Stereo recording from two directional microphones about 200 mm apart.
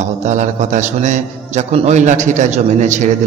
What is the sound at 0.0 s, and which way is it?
A man's voice, 35° right (ahead or behind).